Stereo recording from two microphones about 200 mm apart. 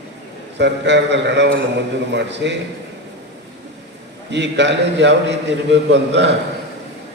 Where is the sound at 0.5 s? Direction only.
60° right (ahead or behind).